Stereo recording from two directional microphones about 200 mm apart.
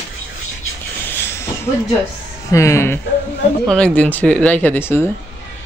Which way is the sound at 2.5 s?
15° left (ahead or behind).